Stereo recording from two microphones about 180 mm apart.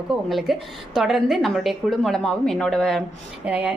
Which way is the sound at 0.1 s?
Centre (ahead or behind).